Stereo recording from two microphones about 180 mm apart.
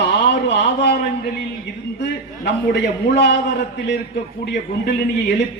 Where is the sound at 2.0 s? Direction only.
70° left (ahead or behind).